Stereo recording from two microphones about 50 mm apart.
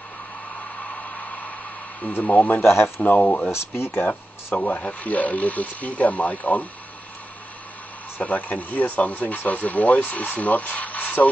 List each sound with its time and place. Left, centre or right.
0.9 s a sound: left
2.1 s speech: left
2.6 s speech: left
3.0 s speech: left
3.4 s speech: left
4.5 s speech: left
8.2 s speech: left